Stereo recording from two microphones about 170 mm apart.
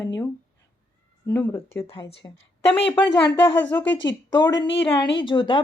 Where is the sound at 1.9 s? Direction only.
30° left (ahead or behind).